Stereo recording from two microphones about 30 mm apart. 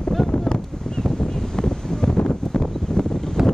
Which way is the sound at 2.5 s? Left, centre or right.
Left.